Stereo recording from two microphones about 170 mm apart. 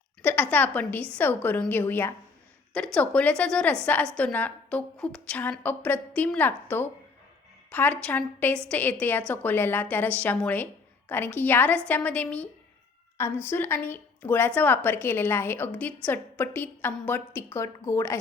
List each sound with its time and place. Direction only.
0.2 s a woman's voice: 10° left (ahead or behind)